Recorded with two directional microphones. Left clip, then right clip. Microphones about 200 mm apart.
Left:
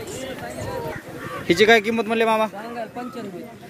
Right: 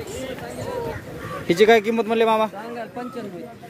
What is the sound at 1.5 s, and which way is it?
Speech, 5° right (ahead or behind).